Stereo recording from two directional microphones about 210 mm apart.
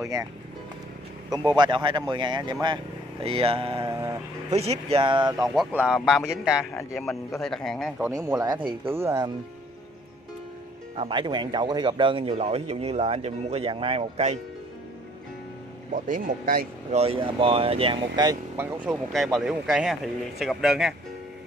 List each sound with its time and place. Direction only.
0.0 s speech: 15° right (ahead or behind)
1.3 s a man's voice: 20° right (ahead or behind)
3.9 s a sound: 15° right (ahead or behind)
4.5 s a man's voice: 30° right (ahead or behind)
5.5 s a man's voice: 5° right (ahead or behind)
6.7 s a man's voice: 15° left (ahead or behind)
7.0 s a man's voice: centre (ahead or behind)
8.1 s speech: 15° right (ahead or behind)
11.0 s a man's voice: 20° right (ahead or behind)
15.9 s speech: 40° right (ahead or behind)
17.0 s a man's voice: 25° right (ahead or behind)
19.1 s a man's voice: centre (ahead or behind)